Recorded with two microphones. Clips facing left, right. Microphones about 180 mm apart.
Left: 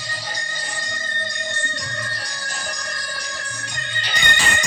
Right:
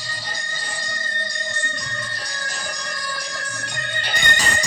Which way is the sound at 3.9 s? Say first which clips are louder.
Even; 55° right (ahead or behind).